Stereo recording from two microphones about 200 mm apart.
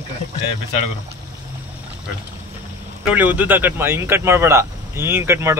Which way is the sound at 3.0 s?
10° right (ahead or behind).